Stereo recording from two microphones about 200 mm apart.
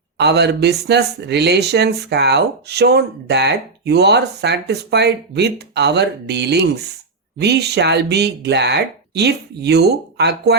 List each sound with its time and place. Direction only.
0.2 s speech: 55° right (ahead or behind)